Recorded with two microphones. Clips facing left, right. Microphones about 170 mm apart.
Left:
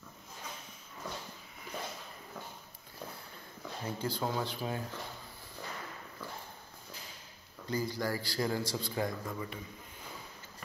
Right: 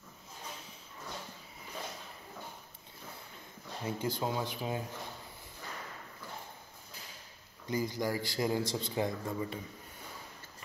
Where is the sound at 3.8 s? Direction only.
20° right (ahead or behind).